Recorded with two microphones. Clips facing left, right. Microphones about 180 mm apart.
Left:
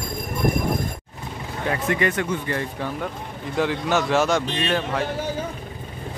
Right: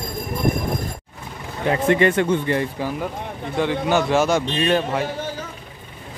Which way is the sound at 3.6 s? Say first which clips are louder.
Right 2 dB; centre (ahead or behind).